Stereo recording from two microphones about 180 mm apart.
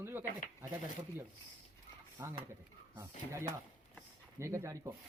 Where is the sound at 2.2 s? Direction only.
15° right (ahead or behind).